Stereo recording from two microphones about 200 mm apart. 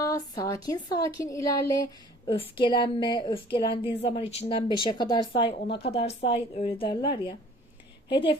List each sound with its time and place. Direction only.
0.0 s speech: 15° left (ahead or behind)
5.6 s speech: 60° left (ahead or behind)
5.9 s speech: 30° left (ahead or behind)